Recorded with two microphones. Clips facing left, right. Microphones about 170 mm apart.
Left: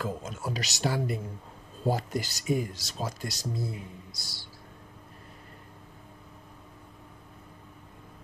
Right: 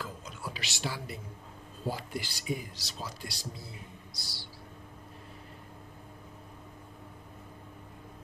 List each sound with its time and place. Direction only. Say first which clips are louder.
0.0 s speech: left 7 dB; 45° left (ahead or behind)